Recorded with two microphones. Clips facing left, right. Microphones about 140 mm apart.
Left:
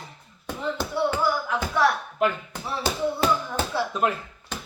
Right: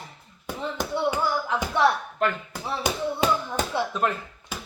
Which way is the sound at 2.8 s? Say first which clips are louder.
Even; 15° right (ahead or behind).